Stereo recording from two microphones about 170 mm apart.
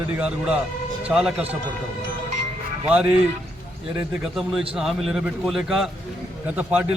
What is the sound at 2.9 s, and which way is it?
A man's voice, 5° right (ahead or behind).